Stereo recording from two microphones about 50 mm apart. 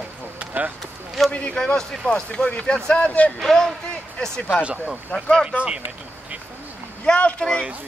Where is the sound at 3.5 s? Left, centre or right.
Centre.